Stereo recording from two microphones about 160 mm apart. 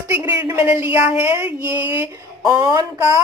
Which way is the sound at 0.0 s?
20° right (ahead or behind).